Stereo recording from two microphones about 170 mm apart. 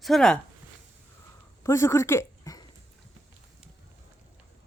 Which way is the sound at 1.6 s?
15° left (ahead or behind).